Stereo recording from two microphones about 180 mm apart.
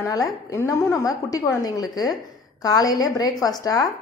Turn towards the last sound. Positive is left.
turn(degrees=20)  # may be behind; listen again after turning